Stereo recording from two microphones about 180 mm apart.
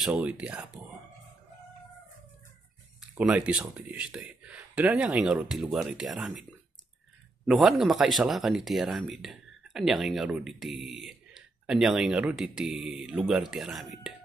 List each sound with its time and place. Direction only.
0.0 s speech: 5° right (ahead or behind)
3.0 s speech: 5° right (ahead or behind)
7.4 s speech: centre (ahead or behind)